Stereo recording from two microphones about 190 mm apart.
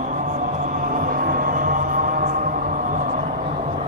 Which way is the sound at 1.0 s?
45° right (ahead or behind).